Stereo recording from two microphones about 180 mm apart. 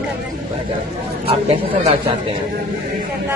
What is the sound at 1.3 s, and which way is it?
Speech, 35° right (ahead or behind).